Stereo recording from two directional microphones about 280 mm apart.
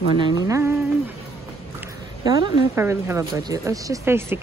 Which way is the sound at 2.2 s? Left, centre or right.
Centre.